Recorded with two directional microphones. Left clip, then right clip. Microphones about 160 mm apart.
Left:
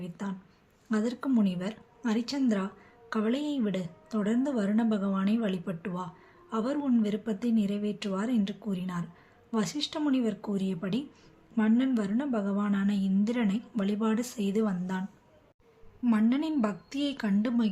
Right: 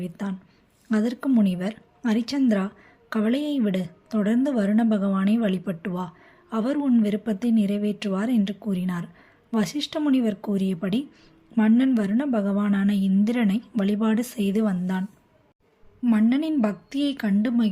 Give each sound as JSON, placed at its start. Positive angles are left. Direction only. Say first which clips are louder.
{"t": 0.2, "sound": "a woman's voice", "louder": "right 5 dB", "side_deg": -40}
{"t": 16.0, "sound": "a woman's voice", "louder": "right 5 dB", "side_deg": -30}